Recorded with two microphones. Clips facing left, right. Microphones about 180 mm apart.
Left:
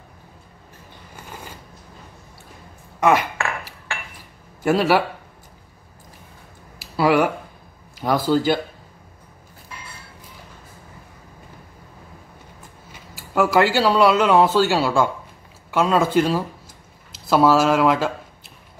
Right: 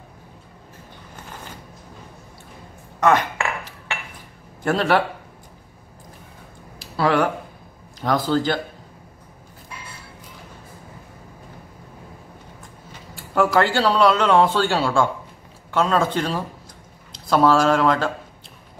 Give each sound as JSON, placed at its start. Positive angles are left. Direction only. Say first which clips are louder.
{"t": 3.0, "sound": "cutlery", "louder": "even", "side_deg": 10}
{"t": 4.6, "sound": "a man's voice", "louder": "left 2 dB", "side_deg": 5}
{"t": 6.8, "sound": "a sound", "louder": "left 2 dB", "side_deg": 5}
{"t": 8.0, "sound": "speech", "louder": "left 2 dB", "side_deg": 10}
{"t": 13.1, "sound": "speech", "louder": "left 1 dB", "side_deg": 5}